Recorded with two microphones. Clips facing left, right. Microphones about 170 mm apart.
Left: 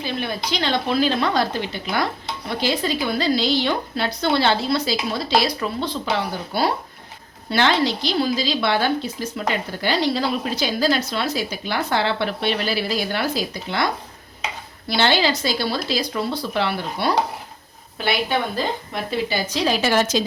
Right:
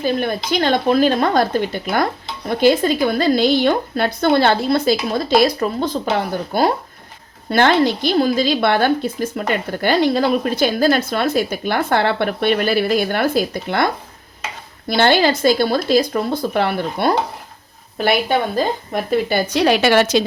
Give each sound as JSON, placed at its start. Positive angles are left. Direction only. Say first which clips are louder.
{"t": 0.0, "sound": "a woman's voice", "louder": "right 7 dB", "side_deg": -45}